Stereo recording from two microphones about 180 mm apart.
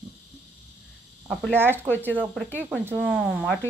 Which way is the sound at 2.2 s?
Centre (ahead or behind).